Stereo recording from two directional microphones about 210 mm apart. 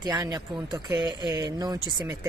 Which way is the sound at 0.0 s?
20° right (ahead or behind).